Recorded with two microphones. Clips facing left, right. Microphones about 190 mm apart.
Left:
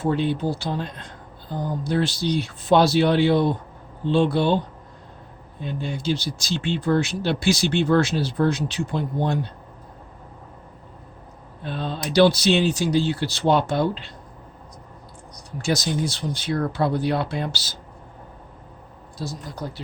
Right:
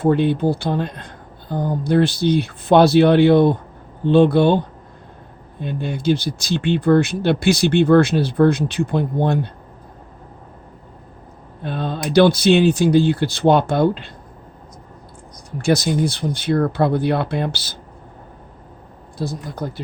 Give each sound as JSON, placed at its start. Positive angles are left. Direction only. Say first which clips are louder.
{"t": 0.0, "sound": "speech", "louder": "right 6 dB", "side_deg": -55}
{"t": 11.6, "sound": "speech", "louder": "right 4 dB", "side_deg": -55}
{"t": 15.5, "sound": "speech", "louder": "right 6 dB", "side_deg": -60}
{"t": 19.2, "sound": "speech", "louder": "right 6 dB", "side_deg": -55}